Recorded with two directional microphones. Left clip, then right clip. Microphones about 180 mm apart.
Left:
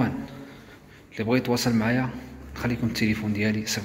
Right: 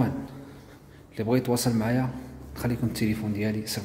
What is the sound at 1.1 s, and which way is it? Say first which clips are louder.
A man's voice: left 1 dB; 20° right (ahead or behind).